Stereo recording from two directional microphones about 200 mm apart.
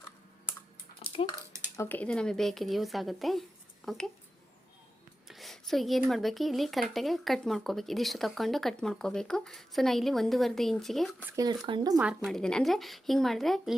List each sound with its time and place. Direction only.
0.9 s dog: 25° left (ahead or behind)
1.7 s speech: 10° left (ahead or behind)
5.3 s speech: centre (ahead or behind)
11.3 s speech: 20° right (ahead or behind)
11.9 s speech: 5° right (ahead or behind)